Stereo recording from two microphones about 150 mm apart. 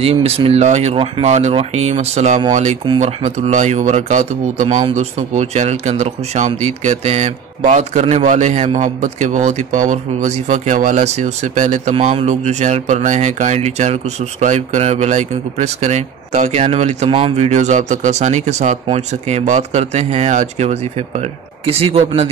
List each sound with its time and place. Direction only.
0.0 s speech: 40° right (ahead or behind)
4.6 s speech: 35° right (ahead or behind)
4.9 s speech: 50° right (ahead or behind)
11.9 s speech: 40° right (ahead or behind)